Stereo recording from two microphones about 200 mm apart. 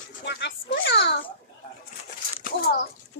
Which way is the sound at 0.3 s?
60° left (ahead or behind).